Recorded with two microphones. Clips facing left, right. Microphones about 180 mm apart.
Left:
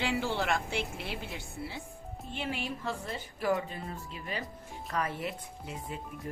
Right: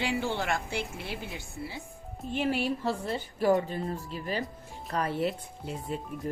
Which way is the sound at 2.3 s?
40° right (ahead or behind).